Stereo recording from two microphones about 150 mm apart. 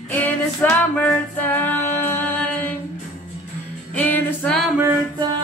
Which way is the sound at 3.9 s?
10° left (ahead or behind).